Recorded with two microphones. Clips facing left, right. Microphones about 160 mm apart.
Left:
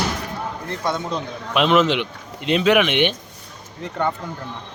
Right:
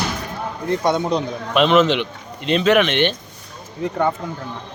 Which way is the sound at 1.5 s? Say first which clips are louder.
Right 2 dB; 5° left (ahead or behind).